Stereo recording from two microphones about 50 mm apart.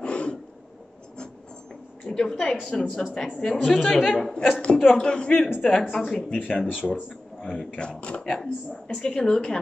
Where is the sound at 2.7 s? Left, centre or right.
Centre.